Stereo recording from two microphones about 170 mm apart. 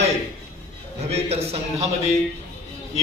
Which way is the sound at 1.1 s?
35° right (ahead or behind).